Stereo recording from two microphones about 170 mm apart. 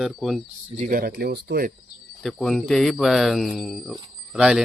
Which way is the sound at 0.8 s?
60° right (ahead or behind).